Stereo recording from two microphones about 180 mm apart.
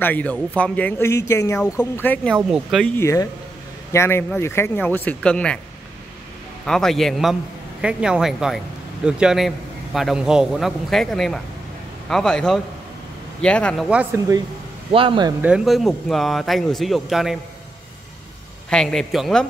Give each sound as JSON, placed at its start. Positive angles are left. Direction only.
{"t": 0.0, "sound": "a man's voice", "side_deg": 10}
{"t": 2.3, "sound": "speech", "side_deg": -5}
{"t": 3.0, "sound": "a man's voice", "side_deg": 15}
{"t": 6.6, "sound": "speech", "side_deg": 5}
{"t": 13.8, "sound": "speech", "side_deg": -5}
{"t": 14.9, "sound": "speech", "side_deg": -30}
{"t": 15.4, "sound": "speech", "side_deg": -5}
{"t": 18.7, "sound": "speech", "side_deg": 5}